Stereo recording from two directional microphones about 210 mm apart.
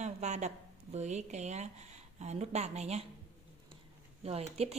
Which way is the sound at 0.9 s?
35° right (ahead or behind).